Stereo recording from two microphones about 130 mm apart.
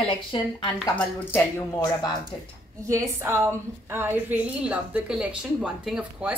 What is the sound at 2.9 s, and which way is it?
A woman's voice, 20° right (ahead or behind).